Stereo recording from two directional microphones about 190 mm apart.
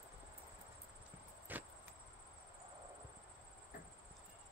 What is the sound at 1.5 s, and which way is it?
Vehicle, 10° right (ahead or behind).